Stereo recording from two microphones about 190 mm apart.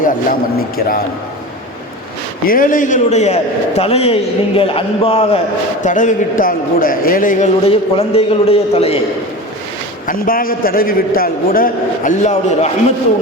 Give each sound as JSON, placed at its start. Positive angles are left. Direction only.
{"t": 0.0, "sound": "a man's voice", "side_deg": 45}
{"t": 2.5, "sound": "a man's voice", "side_deg": 45}
{"t": 5.8, "sound": "a man's voice", "side_deg": 40}
{"t": 10.1, "sound": "a man's voice", "side_deg": 50}